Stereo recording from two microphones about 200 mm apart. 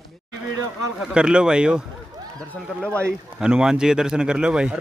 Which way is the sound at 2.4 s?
5° left (ahead or behind).